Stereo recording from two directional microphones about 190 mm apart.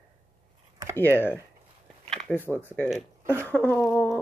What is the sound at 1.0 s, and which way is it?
Speech, 10° left (ahead or behind).